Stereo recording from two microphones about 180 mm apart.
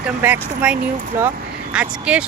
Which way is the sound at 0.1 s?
10° right (ahead or behind).